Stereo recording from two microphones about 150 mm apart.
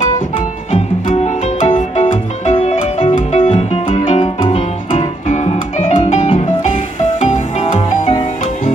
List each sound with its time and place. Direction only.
0.7 s music: 45° left (ahead or behind)
5.3 s music: 50° left (ahead or behind)